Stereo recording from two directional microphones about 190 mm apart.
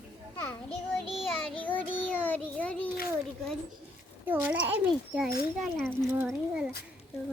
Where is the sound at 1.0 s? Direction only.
30° left (ahead or behind).